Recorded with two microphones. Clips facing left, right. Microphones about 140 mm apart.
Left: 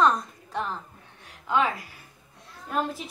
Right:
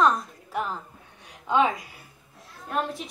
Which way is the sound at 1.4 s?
20° right (ahead or behind).